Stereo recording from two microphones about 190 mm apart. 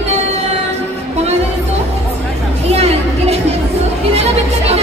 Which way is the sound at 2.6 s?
35° right (ahead or behind).